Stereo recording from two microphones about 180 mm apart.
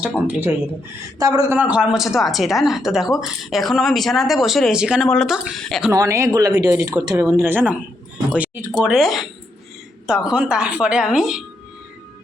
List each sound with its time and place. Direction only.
0.0 s speech: 10° right (ahead or behind)
5.9 s speech: 15° right (ahead or behind); by 9.2 s centre (ahead or behind)
10.2 s speech: 5° right (ahead or behind)